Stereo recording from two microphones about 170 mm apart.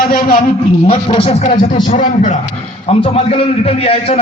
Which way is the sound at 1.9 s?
45° left (ahead or behind).